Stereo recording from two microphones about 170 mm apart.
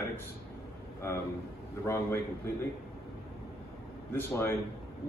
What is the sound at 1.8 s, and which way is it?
Speech, 15° left (ahead or behind).